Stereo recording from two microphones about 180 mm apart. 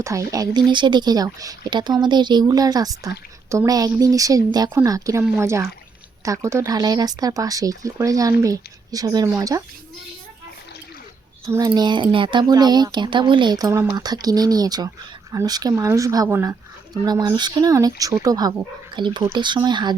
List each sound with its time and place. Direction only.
0.0 s speech: 15° right (ahead or behind)
11.4 s speech: 20° right (ahead or behind)